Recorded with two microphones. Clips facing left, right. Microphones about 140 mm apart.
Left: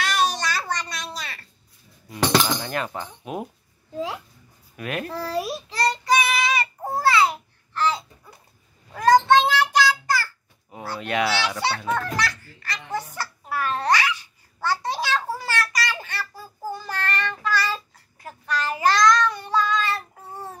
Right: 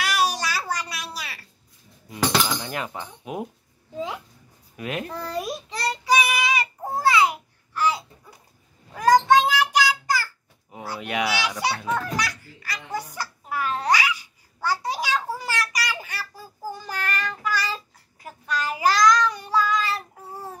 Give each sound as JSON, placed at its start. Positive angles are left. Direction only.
{"t": 0.0, "sound": "a sound", "side_deg": -10}
{"t": 2.6, "sound": "speech", "side_deg": -15}
{"t": 3.9, "sound": "speech", "side_deg": 5}
{"t": 4.7, "sound": "a child's voice", "side_deg": -20}
{"t": 5.1, "sound": "child singing", "side_deg": 5}
{"t": 7.0, "sound": "babbling", "side_deg": -15}
{"t": 8.9, "sound": "child singing", "side_deg": -10}
{"t": 10.7, "sound": "children playing", "side_deg": -15}
{"t": 16.7, "sound": "child singing", "side_deg": -15}